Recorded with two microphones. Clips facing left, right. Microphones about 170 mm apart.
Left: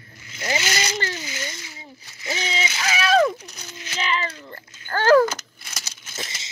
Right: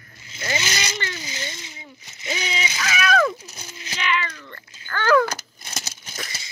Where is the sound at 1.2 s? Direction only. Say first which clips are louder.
Left 1 dB; 25° right (ahead or behind).